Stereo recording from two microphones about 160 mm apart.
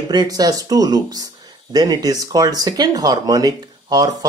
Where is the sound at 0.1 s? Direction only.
25° right (ahead or behind).